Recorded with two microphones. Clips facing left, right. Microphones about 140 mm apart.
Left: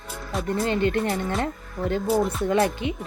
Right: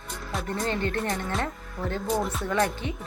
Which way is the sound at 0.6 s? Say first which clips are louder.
Left 5 dB; 15° left (ahead or behind).